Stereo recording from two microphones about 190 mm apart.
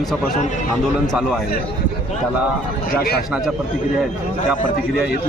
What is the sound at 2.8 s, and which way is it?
Speech, 55° left (ahead or behind).